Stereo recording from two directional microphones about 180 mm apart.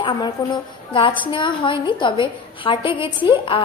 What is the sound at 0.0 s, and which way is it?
A woman's voice, 25° left (ahead or behind).